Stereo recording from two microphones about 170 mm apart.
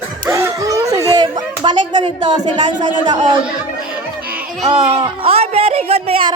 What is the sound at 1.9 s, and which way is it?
Speech, 30° right (ahead or behind).